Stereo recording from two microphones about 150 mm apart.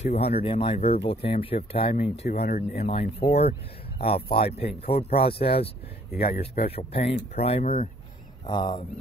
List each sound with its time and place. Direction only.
0.0 s speech: 45° left (ahead or behind)
6.1 s speech: 90° left
6.7 s speech: 40° left (ahead or behind)
8.5 s speech: 30° left (ahead or behind)